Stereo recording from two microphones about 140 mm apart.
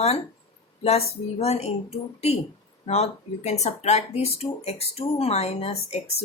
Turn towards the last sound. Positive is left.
turn(degrees=50)  # may be behind; listen again after turning